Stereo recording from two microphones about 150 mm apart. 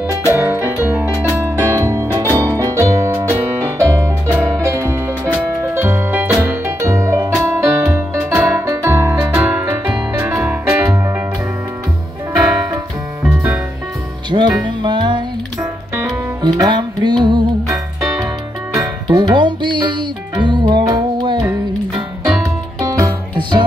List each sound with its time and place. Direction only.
0.3 s music: 15° right (ahead or behind)
14.3 s music: 30° right (ahead or behind)
15.6 s music: 20° right (ahead or behind)